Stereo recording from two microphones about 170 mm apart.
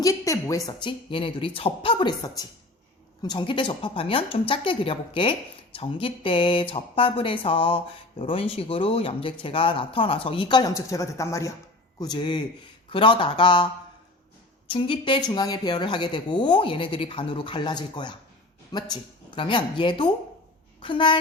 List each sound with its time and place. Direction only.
0.0 s a woman's voice: 20° left (ahead or behind)
14.7 s speech: 30° left (ahead or behind)